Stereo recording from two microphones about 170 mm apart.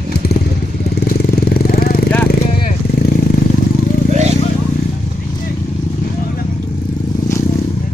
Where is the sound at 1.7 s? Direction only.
60° left (ahead or behind).